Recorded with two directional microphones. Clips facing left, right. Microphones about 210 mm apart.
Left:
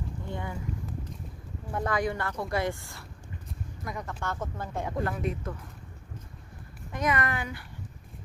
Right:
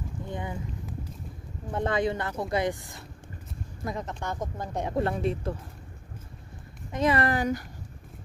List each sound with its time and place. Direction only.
0.3 s speech: 20° right (ahead or behind)
1.7 s speech: 25° right (ahead or behind)
4.9 s speech: 30° right (ahead or behind)
6.9 s speech: 30° right (ahead or behind)